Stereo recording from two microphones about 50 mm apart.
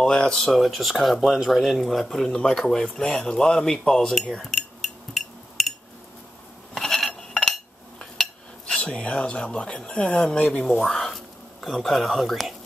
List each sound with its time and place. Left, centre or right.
0.0 s speech: centre
4.1 s cutlery: centre
6.7 s a sound: centre
7.2 s a sound: centre
8.0 s dishes: centre
9.8 s speech: left
10.9 s whispering: centre